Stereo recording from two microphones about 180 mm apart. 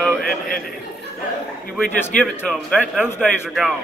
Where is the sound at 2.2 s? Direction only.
5° left (ahead or behind).